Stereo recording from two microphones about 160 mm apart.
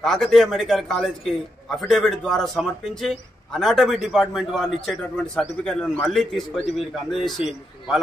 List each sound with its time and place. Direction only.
0.0 s a man's voice: centre (ahead or behind)